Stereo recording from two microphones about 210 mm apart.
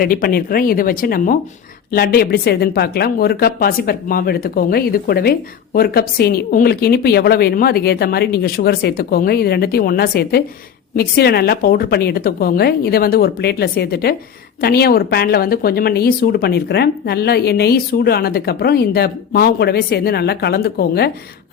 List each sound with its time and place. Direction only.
0.0 s speech: 45° left (ahead or behind)